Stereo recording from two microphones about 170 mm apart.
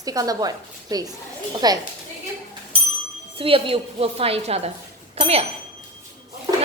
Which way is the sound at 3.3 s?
30° right (ahead or behind).